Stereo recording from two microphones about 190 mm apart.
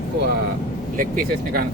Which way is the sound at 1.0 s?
50° right (ahead or behind).